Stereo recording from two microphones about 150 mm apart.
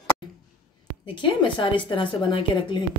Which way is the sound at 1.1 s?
30° left (ahead or behind).